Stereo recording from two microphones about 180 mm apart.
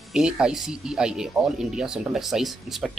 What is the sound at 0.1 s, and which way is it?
Speech, 5° right (ahead or behind).